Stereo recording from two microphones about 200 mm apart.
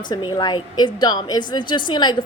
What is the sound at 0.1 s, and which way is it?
A woman's voice, 20° left (ahead or behind).